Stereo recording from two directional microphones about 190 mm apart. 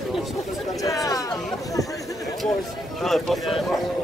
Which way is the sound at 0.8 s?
15° left (ahead or behind).